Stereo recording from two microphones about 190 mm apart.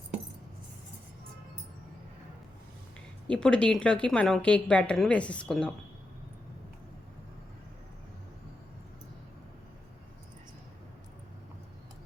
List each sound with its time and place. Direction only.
3.2 s a woman's voice: 5° left (ahead or behind)